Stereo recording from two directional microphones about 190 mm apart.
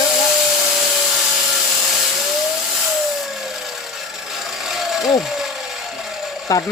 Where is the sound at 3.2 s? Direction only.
Centre (ahead or behind).